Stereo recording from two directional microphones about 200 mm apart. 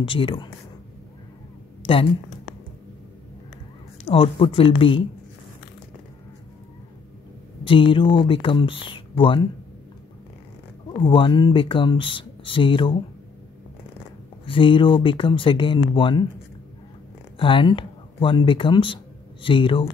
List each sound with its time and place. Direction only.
0.0 s speech: 25° left (ahead or behind)
1.9 s speech: 25° left (ahead or behind)
4.0 s speech: 30° left (ahead or behind)
7.6 s speech: 25° left (ahead or behind)
11.0 s speech: 25° left (ahead or behind)
14.4 s speech: 25° left (ahead or behind)
17.4 s speech: 25° left (ahead or behind)